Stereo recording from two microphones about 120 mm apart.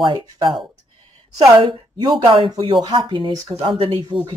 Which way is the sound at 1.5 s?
40° right (ahead or behind).